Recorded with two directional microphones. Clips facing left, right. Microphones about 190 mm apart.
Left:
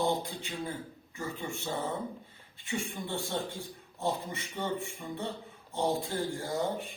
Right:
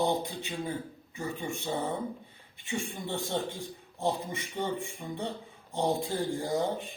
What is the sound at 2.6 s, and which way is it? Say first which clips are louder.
Speech: right 1 dB; 20° right (ahead or behind).